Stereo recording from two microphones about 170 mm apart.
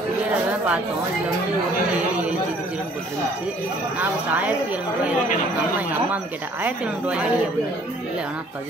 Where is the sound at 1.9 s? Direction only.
10° right (ahead or behind).